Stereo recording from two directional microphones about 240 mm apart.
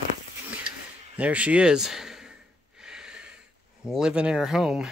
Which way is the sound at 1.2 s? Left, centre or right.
Centre.